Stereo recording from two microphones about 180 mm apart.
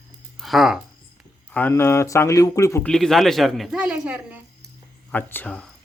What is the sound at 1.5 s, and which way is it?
Speech, 10° left (ahead or behind).